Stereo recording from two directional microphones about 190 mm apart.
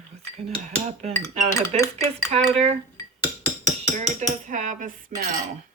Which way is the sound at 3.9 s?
40° right (ahead or behind).